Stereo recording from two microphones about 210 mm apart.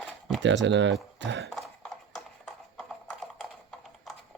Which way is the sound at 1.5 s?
Centre (ahead or behind).